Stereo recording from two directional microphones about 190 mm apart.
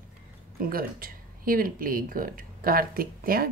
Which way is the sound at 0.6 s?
50° right (ahead or behind).